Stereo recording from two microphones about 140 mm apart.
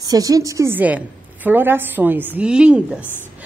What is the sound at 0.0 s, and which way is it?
A woman's voice, 25° right (ahead or behind).